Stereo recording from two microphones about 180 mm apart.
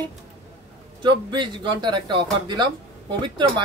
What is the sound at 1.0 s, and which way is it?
Speech, 25° right (ahead or behind).